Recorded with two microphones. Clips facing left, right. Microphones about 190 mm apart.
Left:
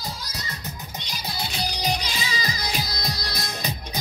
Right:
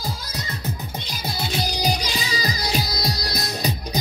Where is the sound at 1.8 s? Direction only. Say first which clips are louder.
Right 3 dB; 40° right (ahead or behind).